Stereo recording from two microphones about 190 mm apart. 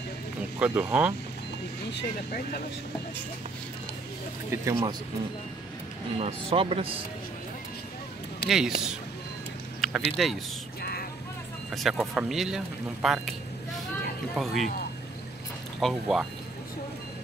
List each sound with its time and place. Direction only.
0.6 s speech: 5° right (ahead or behind)
1.9 s speech: 60° left (ahead or behind)
4.5 s speech: 20° right (ahead or behind)
6.1 s speech: 30° right (ahead or behind)
8.5 s speech: 5° right (ahead or behind)
9.8 s vehicle: centre (ahead or behind)
10.2 s speech: centre (ahead or behind)
10.8 s a sound: 55° left (ahead or behind)
11.7 s speech: centre (ahead or behind)
14.3 s speech: centre (ahead or behind)
15.8 s speech: centre (ahead or behind)